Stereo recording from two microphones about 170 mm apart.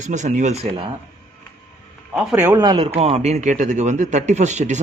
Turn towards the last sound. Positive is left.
turn(degrees=-45)  # may be behind; listen again after turning